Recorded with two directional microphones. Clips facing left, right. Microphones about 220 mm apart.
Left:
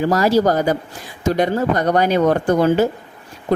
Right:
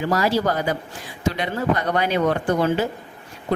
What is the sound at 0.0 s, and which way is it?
Speech, 40° left (ahead or behind).